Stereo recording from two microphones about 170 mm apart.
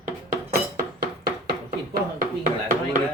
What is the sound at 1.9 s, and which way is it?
Speech, 55° right (ahead or behind).